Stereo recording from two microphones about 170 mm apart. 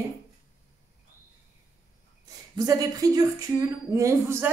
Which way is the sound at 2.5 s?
20° right (ahead or behind).